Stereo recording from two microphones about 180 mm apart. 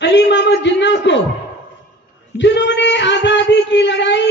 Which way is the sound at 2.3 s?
80° left.